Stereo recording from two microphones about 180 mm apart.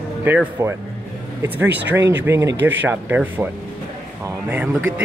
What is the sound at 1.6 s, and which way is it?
Speech, 70° right (ahead or behind).